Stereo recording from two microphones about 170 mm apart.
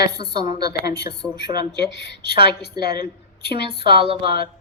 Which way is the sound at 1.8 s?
75° left (ahead or behind).